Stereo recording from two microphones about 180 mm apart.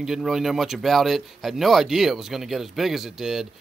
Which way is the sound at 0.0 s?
Centre (ahead or behind).